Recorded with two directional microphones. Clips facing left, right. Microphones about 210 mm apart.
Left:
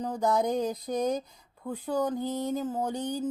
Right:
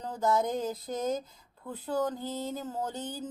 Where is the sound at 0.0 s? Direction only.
15° left (ahead or behind).